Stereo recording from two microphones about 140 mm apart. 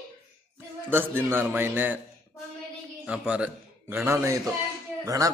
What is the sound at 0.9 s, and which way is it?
A man's voice, 15° right (ahead or behind).